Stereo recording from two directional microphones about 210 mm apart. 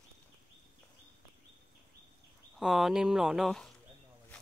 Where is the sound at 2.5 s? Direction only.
Centre (ahead or behind).